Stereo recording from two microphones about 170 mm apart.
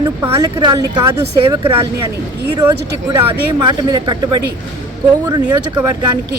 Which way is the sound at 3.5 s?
25° right (ahead or behind).